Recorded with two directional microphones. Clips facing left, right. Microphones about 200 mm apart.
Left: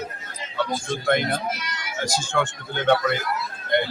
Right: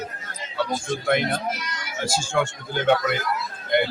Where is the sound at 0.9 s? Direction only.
5° right (ahead or behind).